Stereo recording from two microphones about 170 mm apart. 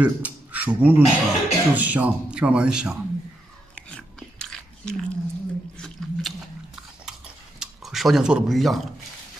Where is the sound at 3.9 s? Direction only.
5° left (ahead or behind).